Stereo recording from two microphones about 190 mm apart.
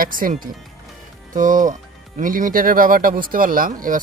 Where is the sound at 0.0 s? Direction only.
45° right (ahead or behind).